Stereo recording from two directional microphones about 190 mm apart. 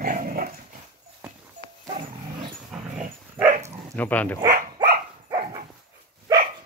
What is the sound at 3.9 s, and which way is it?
Speech, 10° left (ahead or behind).